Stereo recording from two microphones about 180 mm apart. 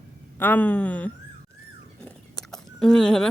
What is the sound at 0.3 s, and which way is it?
Speech, 10° left (ahead or behind).